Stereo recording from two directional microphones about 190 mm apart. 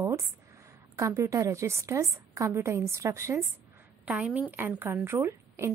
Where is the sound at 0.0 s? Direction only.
15° right (ahead or behind).